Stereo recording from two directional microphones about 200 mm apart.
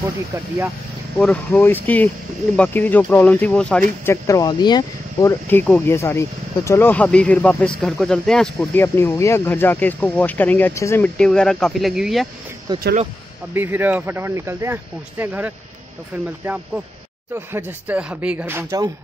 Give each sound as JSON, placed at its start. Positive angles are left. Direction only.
{"t": 1.2, "sound": "speech", "side_deg": 5}
{"t": 12.7, "sound": "speech", "side_deg": -20}
{"t": 17.5, "sound": "speech", "side_deg": -10}